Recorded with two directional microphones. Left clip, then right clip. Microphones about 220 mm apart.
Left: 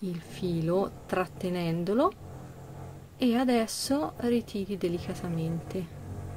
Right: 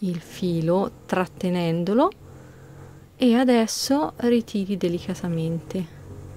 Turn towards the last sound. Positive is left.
turn(degrees=-30)  # may be behind; listen again after turning